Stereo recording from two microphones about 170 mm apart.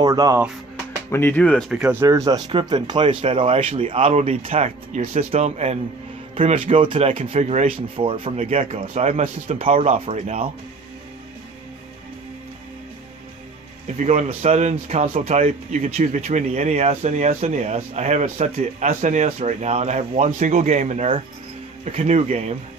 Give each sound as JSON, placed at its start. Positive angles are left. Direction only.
{"t": 0.0, "sound": "speech", "side_deg": -20}
{"t": 1.1, "sound": "speech", "side_deg": 10}
{"t": 2.0, "sound": "speech", "side_deg": -20}
{"t": 13.9, "sound": "speech", "side_deg": -40}